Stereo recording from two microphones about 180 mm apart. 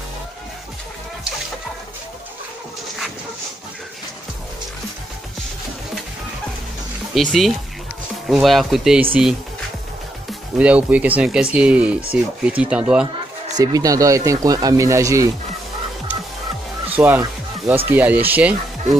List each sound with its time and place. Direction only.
7.2 s speech: centre (ahead or behind)
10.6 s speech: 5° right (ahead or behind)
13.6 s speech: 20° right (ahead or behind)
16.9 s music: 10° right (ahead or behind)
17.8 s speech: 10° right (ahead or behind)